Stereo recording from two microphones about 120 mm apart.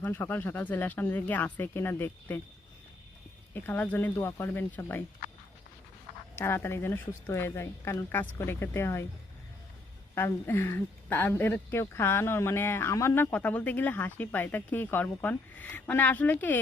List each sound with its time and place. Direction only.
0.0 s speech: 20° left (ahead or behind)
3.5 s speech: 15° left (ahead or behind)
6.3 s speech: 20° left (ahead or behind)
10.2 s speech: 20° left (ahead or behind)